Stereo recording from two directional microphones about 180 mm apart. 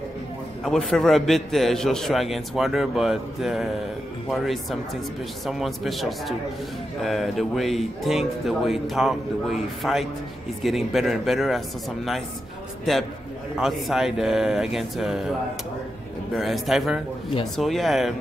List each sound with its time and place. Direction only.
0.7 s a man's voice: centre (ahead or behind)
13.6 s a man's voice: centre (ahead or behind)
16.3 s a man's voice: centre (ahead or behind)